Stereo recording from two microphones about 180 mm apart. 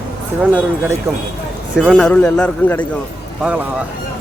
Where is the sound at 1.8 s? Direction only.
Centre (ahead or behind).